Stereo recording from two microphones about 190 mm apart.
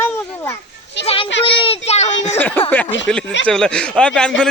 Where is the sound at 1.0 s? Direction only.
30° left (ahead or behind).